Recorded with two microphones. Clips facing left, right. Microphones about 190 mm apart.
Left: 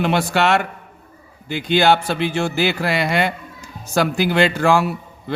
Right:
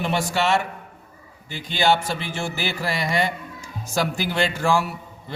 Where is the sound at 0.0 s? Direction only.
65° left (ahead or behind).